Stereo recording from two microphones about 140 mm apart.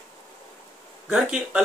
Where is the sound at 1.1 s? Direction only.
5° right (ahead or behind).